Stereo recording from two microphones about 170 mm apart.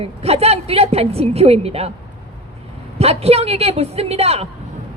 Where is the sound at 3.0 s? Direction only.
35° right (ahead or behind).